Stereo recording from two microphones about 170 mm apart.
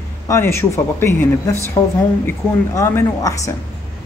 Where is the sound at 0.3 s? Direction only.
15° left (ahead or behind).